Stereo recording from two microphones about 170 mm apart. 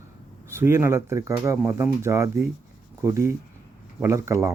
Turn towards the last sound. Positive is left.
turn(degrees=-15)  # may be behind; listen again after turning